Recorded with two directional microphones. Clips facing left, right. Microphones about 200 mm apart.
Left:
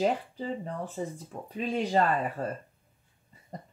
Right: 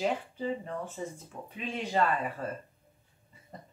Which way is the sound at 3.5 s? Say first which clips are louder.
Left 5 dB; 40° left (ahead or behind).